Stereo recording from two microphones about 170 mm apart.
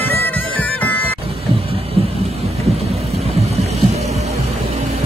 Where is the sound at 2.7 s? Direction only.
35° right (ahead or behind).